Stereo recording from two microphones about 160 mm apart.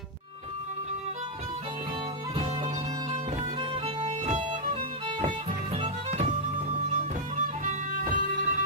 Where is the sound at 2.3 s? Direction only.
40° right (ahead or behind).